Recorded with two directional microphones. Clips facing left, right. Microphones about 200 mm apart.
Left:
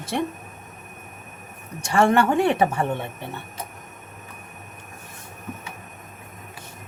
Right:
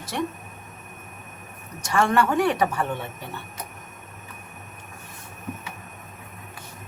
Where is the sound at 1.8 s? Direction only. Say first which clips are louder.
Left 3 dB; 25° left (ahead or behind).